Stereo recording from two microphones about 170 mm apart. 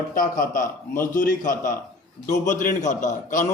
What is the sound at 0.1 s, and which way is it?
A man's voice, 50° left (ahead or behind).